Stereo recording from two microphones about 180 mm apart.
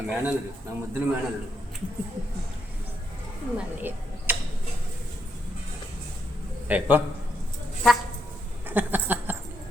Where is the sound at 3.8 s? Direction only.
10° right (ahead or behind).